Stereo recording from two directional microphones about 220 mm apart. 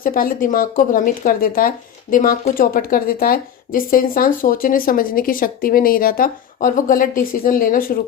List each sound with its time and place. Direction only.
0.0 s speech: 40° left (ahead or behind)